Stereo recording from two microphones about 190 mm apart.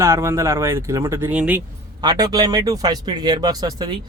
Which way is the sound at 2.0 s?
20° right (ahead or behind).